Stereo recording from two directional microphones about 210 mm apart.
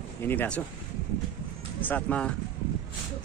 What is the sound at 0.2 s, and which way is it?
Speech, 10° left (ahead or behind).